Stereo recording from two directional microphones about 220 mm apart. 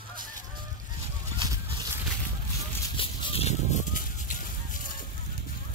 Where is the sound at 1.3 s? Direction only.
20° right (ahead or behind).